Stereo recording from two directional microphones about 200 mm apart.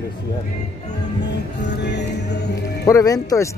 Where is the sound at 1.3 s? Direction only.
60° left (ahead or behind).